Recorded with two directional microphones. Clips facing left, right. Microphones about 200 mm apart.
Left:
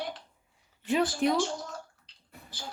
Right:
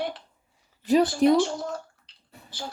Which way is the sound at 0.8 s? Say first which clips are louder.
Right 7 dB; 40° right (ahead or behind).